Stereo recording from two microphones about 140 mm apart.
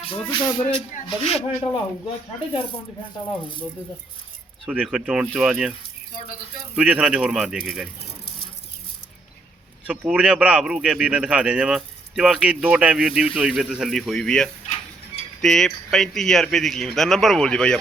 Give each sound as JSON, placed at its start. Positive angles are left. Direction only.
{"t": 0.0, "sound": "speech", "side_deg": 35}
{"t": 4.6, "sound": "speech", "side_deg": -5}
{"t": 6.7, "sound": "speech", "side_deg": -10}
{"t": 9.8, "sound": "speech", "side_deg": -5}